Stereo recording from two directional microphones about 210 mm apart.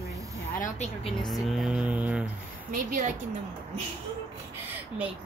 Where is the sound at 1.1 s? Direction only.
Centre (ahead or behind).